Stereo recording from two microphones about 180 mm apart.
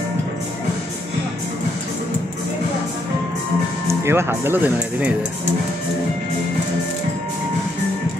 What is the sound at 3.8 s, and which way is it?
Speech, 15° right (ahead or behind).